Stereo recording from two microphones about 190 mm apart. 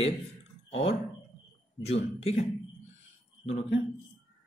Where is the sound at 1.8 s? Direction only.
35° left (ahead or behind).